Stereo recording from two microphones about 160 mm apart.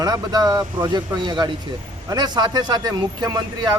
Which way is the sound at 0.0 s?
25° right (ahead or behind).